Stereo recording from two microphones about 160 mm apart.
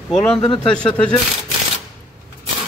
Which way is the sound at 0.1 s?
5° left (ahead or behind).